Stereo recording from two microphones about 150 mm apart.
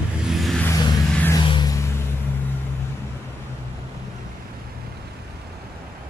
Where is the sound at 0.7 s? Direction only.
25° left (ahead or behind).